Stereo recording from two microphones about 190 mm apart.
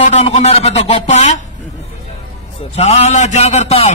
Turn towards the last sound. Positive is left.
turn(degrees=35)  # may be behind; listen again after turning